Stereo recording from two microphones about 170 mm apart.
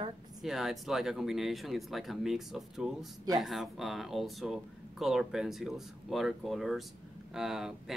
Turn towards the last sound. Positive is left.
turn(degrees=0)  # may be behind; listen again after turning